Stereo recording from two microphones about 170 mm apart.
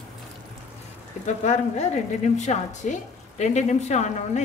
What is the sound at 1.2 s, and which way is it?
Speech, 45° left (ahead or behind).